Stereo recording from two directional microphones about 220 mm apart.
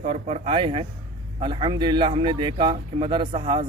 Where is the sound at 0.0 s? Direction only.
30° right (ahead or behind).